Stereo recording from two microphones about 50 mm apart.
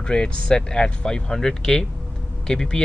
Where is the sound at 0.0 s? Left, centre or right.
Centre.